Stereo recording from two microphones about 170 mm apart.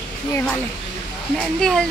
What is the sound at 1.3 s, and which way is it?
Speech, 5° left (ahead or behind).